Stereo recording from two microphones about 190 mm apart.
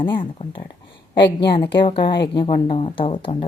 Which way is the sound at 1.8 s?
25° left (ahead or behind).